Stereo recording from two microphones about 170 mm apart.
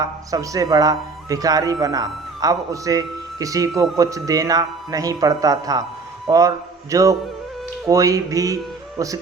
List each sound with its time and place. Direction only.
0.0 s a man's voice: 20° right (ahead or behind)